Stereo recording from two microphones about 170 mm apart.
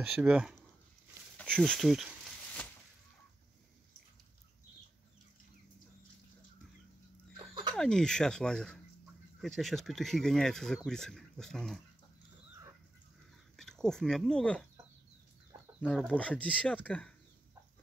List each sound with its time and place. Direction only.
0.0 s speech: 5° right (ahead or behind)
1.4 s a sound: 5° left (ahead or behind)
7.3 s a sound: 25° right (ahead or behind)
7.7 s speech: 5° left (ahead or behind)
13.6 s speech: 5° left (ahead or behind)
15.9 s speech: 5° left (ahead or behind)